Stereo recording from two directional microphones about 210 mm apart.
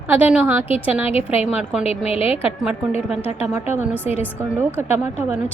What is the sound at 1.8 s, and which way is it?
Speech, 30° left (ahead or behind).